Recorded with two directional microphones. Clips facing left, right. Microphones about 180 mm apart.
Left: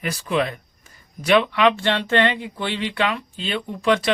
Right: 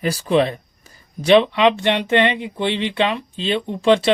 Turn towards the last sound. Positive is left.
turn(degrees=-25)  # may be behind; listen again after turning